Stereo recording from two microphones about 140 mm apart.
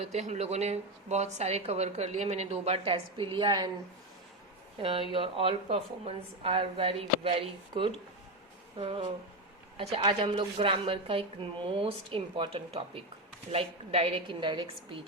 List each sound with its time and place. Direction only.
0.0 s speech: 50° right (ahead or behind); by 3.7 s 35° right (ahead or behind)
4.8 s a woman's voice: 40° right (ahead or behind)